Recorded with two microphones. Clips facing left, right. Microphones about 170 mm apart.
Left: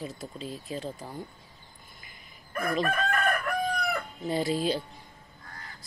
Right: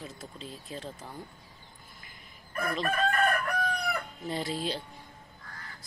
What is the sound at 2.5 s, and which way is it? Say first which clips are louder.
Chicken: left 3 dB; 40° left (ahead or behind).